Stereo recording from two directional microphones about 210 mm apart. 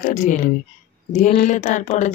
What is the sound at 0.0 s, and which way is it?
A woman's voice, 35° left (ahead or behind).